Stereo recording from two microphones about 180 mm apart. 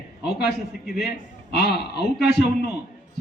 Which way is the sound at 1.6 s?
65° left (ahead or behind).